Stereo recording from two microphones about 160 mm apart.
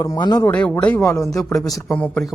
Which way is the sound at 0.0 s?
25° left (ahead or behind).